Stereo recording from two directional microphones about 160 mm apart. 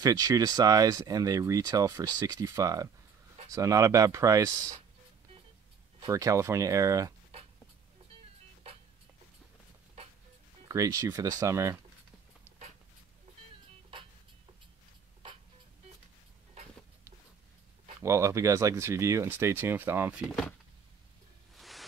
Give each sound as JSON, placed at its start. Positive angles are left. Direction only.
{"t": 0.0, "sound": "speech", "side_deg": -25}
{"t": 6.0, "sound": "speech", "side_deg": -20}
{"t": 10.7, "sound": "speech", "side_deg": -20}
{"t": 18.0, "sound": "speech", "side_deg": -15}
{"t": 21.5, "sound": "a sound", "side_deg": 0}